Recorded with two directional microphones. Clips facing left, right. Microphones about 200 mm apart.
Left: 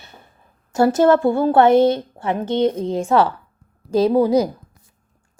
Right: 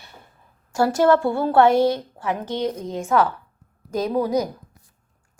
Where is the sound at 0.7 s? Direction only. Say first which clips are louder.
Left 3 dB; 20° left (ahead or behind).